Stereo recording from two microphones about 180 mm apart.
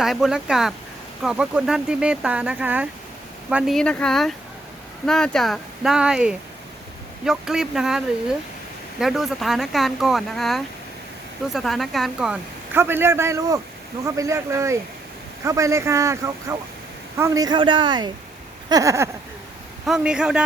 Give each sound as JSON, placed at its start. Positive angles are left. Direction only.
{"t": 0.0, "sound": "speech", "side_deg": 0}
{"t": 19.8, "sound": "speech", "side_deg": -5}